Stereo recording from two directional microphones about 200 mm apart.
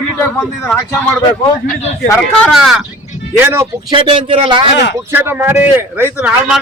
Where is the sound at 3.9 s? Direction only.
25° right (ahead or behind).